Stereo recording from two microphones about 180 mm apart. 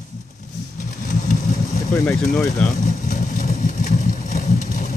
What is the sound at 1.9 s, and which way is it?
Speech, 5° left (ahead or behind).